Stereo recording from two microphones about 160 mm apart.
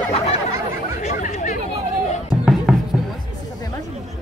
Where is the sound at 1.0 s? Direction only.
45° left (ahead or behind).